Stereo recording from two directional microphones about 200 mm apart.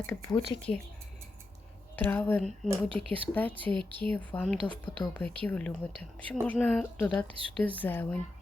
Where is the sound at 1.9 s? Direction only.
10° left (ahead or behind).